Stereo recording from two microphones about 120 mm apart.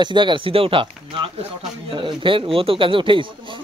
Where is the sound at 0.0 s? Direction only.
40° right (ahead or behind).